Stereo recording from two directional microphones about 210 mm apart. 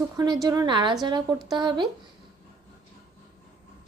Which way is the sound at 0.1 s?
20° right (ahead or behind).